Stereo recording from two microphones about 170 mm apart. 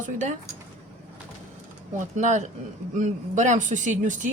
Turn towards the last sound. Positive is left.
turn(degrees=-50)  # may be behind; listen again after turning